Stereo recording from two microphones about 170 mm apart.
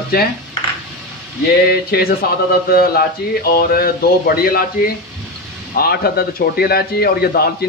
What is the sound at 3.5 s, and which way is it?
A man's voice, 60° left (ahead or behind).